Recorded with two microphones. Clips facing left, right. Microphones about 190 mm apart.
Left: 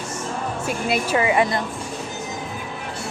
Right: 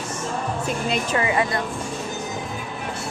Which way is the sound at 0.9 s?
20° left (ahead or behind).